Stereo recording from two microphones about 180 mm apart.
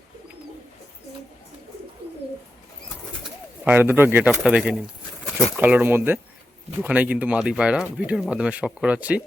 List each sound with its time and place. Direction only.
2.0 s bird: 65° right (ahead or behind)
3.6 s speech: 10° right (ahead or behind)